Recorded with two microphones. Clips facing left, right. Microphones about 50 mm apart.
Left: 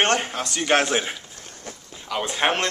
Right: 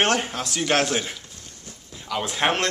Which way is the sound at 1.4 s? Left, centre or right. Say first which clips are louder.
Left 5 dB; left.